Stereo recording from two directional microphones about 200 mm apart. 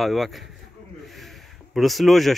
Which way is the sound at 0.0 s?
Centre (ahead or behind).